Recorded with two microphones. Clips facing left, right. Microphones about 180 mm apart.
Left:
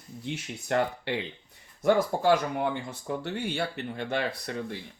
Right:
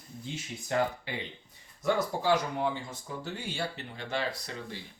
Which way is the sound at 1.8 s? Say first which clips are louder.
Left 5 dB; 55° left (ahead or behind).